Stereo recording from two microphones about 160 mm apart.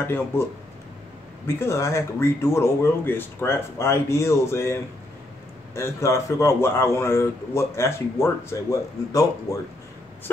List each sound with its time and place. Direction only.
0.0 s a man's voice: 15° left (ahead or behind)
1.6 s a man's voice: 15° left (ahead or behind)